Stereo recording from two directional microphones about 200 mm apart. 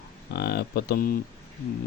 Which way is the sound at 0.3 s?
50° left (ahead or behind).